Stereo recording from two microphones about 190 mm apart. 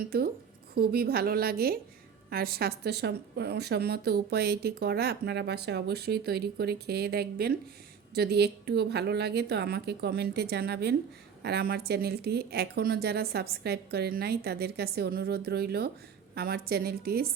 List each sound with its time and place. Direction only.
0.0 s a woman's voice: 55° right (ahead or behind)